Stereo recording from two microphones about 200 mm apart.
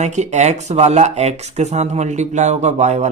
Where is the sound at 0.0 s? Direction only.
35° right (ahead or behind).